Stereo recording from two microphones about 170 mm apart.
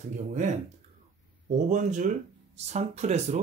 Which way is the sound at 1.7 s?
45° right (ahead or behind).